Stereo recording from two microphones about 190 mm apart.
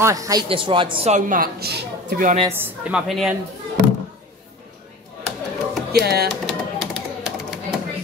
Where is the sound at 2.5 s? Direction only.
10° right (ahead or behind).